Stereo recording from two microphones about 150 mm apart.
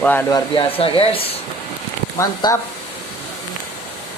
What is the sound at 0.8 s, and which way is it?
Speech, 40° left (ahead or behind).